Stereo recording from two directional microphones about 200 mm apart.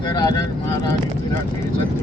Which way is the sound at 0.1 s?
20° left (ahead or behind).